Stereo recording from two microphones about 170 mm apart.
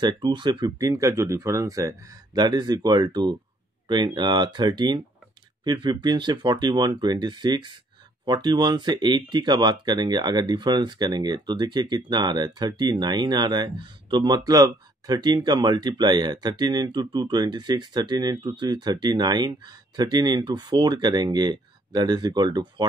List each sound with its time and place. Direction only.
0.0 s speech: 25° right (ahead or behind)